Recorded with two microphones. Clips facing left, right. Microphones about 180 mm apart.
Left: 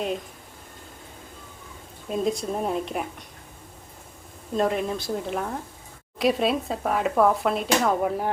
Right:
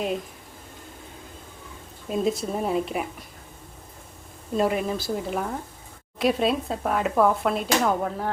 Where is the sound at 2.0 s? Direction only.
Centre (ahead or behind).